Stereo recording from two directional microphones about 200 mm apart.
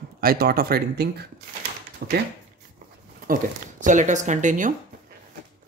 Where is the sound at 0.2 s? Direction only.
50° right (ahead or behind).